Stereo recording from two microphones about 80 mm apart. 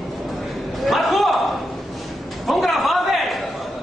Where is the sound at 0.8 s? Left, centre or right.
Centre.